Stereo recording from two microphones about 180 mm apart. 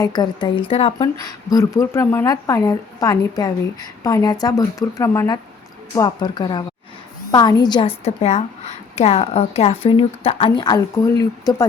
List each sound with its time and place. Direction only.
0.0 s a woman's voice: 25° left (ahead or behind)
1.5 s a woman's voice: 20° left (ahead or behind)